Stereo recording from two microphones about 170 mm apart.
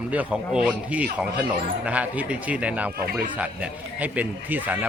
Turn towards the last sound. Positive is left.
turn(degrees=-10)  # may be behind; listen again after turning